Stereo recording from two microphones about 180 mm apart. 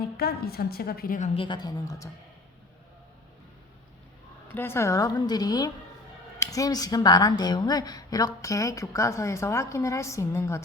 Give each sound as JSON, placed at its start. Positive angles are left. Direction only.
{"t": 0.0, "sound": "a woman's voice", "side_deg": 60}
{"t": 1.3, "sound": "a woman's voice", "side_deg": 30}
{"t": 4.5, "sound": "a woman's voice", "side_deg": 15}